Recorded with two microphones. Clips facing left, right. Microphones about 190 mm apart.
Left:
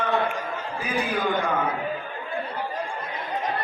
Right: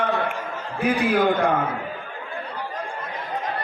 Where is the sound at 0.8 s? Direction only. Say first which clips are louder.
Right 8 dB; 65° right (ahead or behind).